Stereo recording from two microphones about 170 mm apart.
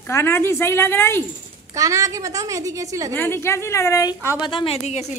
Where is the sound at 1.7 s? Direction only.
20° right (ahead or behind).